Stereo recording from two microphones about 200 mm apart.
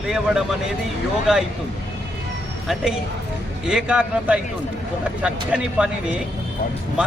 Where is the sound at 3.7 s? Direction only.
5° right (ahead or behind).